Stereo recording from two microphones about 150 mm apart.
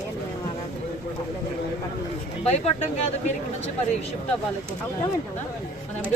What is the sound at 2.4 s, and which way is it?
Speech, 45° left (ahead or behind).